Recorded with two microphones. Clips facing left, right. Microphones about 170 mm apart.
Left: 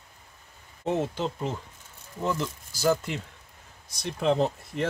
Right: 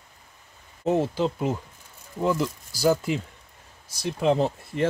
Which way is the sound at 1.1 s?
5° right (ahead or behind).